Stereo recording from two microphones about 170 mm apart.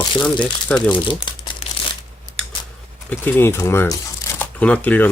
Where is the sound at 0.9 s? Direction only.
30° left (ahead or behind).